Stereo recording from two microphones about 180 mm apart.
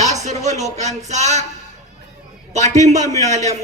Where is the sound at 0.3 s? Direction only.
40° right (ahead or behind).